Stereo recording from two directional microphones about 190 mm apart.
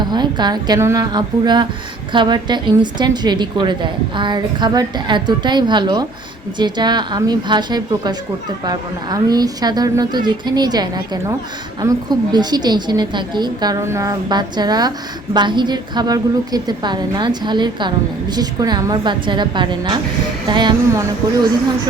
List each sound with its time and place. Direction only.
0.0 s a woman's voice: 25° right (ahead or behind)